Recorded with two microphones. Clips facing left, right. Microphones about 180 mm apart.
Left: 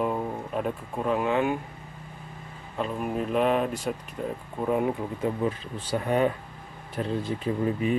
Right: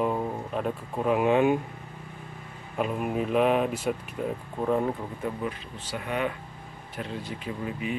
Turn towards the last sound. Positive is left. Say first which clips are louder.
# left 6 dB
turn(degrees=35)  # may be behind; listen again after turning